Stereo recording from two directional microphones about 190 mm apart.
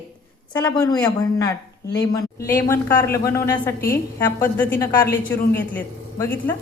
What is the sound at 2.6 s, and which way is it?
Speech, 15° left (ahead or behind).